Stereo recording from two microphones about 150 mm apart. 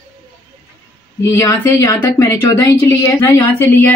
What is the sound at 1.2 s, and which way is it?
Speech, 20° left (ahead or behind).